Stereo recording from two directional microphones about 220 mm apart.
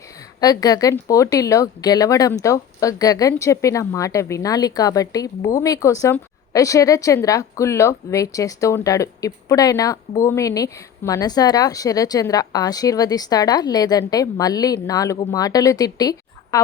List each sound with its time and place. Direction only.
0.3 s a woman's voice: 15° left (ahead or behind)